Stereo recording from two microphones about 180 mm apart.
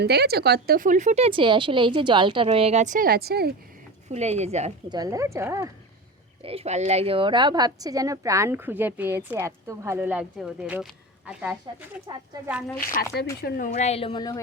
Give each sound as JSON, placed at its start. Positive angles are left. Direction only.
{"t": 0.0, "sound": "speech", "side_deg": -65}
{"t": 4.1, "sound": "speech", "side_deg": -35}
{"t": 4.9, "sound": "speech", "side_deg": -20}
{"t": 6.4, "sound": "speech", "side_deg": -35}
{"t": 13.0, "sound": "speech", "side_deg": 60}
{"t": 13.4, "sound": "a woman's voice", "side_deg": 45}